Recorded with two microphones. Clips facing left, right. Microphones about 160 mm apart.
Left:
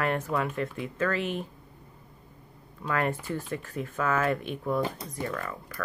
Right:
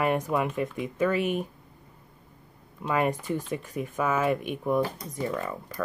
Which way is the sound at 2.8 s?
15° right (ahead or behind).